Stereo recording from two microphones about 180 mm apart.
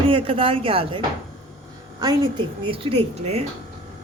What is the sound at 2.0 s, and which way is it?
A woman's voice, 25° right (ahead or behind).